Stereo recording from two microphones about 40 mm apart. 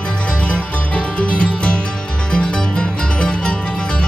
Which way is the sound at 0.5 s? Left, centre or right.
Left.